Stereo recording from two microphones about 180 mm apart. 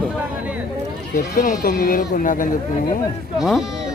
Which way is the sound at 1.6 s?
55° left (ahead or behind).